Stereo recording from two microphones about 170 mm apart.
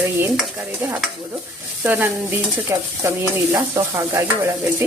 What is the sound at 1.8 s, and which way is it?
Stir, 10° right (ahead or behind).